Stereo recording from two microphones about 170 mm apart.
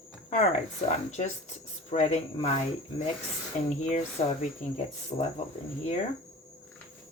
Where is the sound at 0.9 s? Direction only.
40° left (ahead or behind).